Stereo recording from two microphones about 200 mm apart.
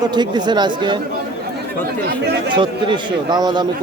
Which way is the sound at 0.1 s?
20° right (ahead or behind).